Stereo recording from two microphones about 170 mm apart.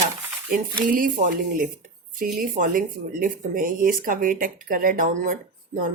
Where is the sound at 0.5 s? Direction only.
55° right (ahead or behind).